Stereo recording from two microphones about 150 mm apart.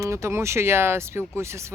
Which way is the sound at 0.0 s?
20° right (ahead or behind).